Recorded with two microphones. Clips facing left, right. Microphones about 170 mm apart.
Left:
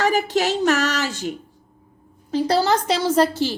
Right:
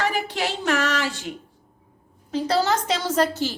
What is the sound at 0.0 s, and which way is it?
A child's voice, 40° left (ahead or behind).